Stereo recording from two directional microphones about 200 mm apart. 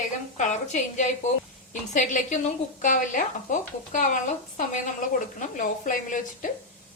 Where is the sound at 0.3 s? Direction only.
35° left (ahead or behind).